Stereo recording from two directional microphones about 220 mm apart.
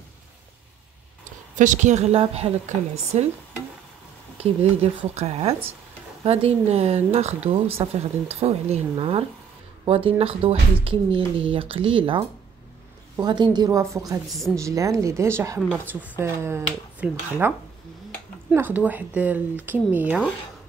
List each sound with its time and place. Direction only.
1.6 s a woman's voice: 35° right (ahead or behind)
5.1 s speech: 30° right (ahead or behind)
14.3 s a woman's voice: centre (ahead or behind)
14.6 s speech: 15° right (ahead or behind)